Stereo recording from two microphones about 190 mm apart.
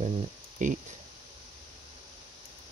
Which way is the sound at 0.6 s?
40° right (ahead or behind).